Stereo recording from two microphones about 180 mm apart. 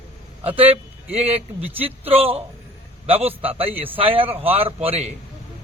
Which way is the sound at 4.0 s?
30° right (ahead or behind).